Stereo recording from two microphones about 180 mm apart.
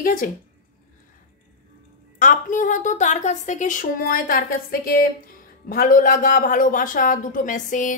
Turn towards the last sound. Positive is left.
turn(degrees=45)  # may be behind; listen again after turning